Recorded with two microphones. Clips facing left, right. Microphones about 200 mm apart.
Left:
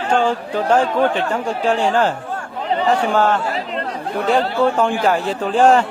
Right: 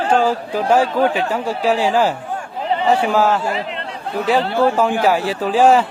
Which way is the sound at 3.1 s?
5° right (ahead or behind).